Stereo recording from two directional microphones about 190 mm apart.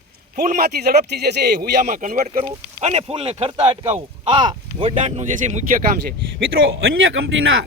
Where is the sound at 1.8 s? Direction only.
40° right (ahead or behind).